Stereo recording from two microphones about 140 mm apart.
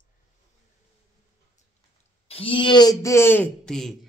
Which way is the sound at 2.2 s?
40° left (ahead or behind).